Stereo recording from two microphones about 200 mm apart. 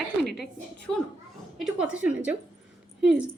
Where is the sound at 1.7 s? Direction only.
5° right (ahead or behind).